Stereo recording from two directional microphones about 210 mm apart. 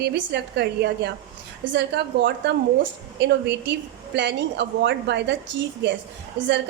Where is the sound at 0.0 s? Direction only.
55° right (ahead or behind).